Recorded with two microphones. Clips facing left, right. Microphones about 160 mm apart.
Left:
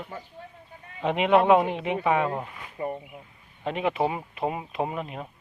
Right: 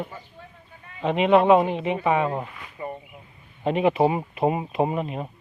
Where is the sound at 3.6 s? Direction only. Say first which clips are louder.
Right 6 dB; 5° right (ahead or behind).